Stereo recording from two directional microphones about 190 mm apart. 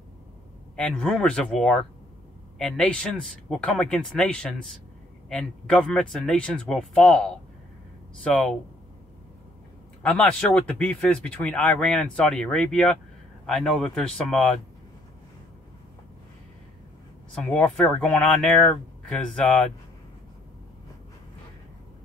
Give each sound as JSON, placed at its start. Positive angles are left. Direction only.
{"t": 0.7, "sound": "speech", "side_deg": 5}
{"t": 10.0, "sound": "speech", "side_deg": 5}
{"t": 17.4, "sound": "speech", "side_deg": 5}